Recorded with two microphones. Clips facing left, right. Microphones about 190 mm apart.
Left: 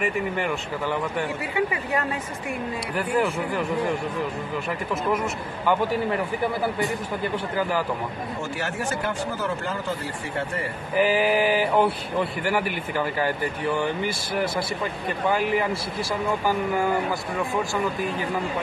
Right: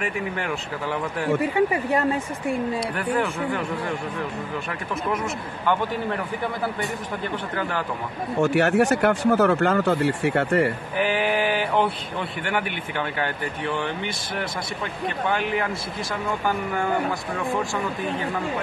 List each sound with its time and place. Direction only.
0.0 s speech: centre (ahead or behind)
1.4 s speech: 35° right (ahead or behind)
8.4 s speech: 70° right (ahead or behind)
11.0 s speech: centre (ahead or behind)